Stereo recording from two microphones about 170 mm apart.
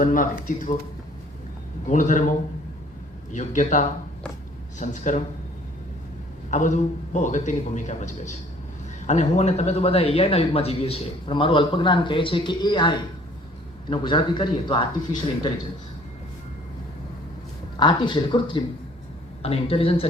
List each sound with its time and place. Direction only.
0.0 s a man's voice: 55° left (ahead or behind)
1.9 s a man's voice: 45° left (ahead or behind)
3.3 s a man's voice: 45° left (ahead or behind)
6.5 s a man's voice: 45° left (ahead or behind); by 14.8 s 30° left (ahead or behind)
17.7 s a man's voice: 25° left (ahead or behind)